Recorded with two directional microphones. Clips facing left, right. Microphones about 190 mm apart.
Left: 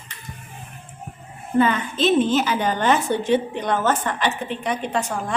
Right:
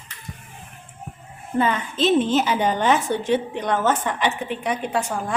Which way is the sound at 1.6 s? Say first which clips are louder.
Left 1 dB; 30° right (ahead or behind).